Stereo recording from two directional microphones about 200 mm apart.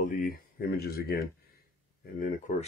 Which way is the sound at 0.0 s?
40° left (ahead or behind).